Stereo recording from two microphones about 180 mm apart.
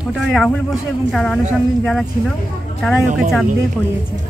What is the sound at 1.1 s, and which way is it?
Speech, centre (ahead or behind).